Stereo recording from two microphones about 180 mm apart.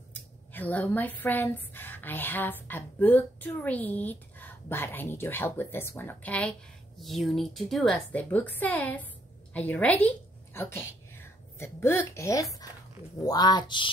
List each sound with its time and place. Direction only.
0.5 s a woman's voice: 10° left (ahead or behind); by 13.8 s 25° left (ahead or behind)